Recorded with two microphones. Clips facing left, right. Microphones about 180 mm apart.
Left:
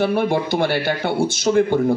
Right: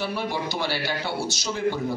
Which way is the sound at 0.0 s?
55° left (ahead or behind).